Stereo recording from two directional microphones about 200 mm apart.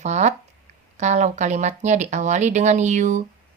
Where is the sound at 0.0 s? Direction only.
35° right (ahead or behind).